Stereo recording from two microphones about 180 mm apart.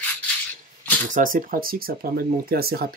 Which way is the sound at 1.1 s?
50° right (ahead or behind).